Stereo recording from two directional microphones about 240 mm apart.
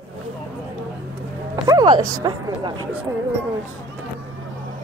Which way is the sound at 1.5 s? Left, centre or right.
Centre.